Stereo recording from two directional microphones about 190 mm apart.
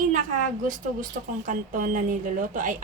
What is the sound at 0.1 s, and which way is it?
Speech, 40° right (ahead or behind).